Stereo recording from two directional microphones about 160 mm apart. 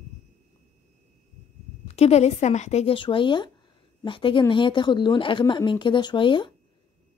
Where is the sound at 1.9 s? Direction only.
40° left (ahead or behind).